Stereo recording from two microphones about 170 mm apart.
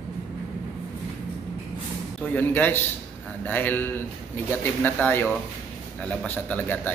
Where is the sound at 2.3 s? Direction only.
10° left (ahead or behind).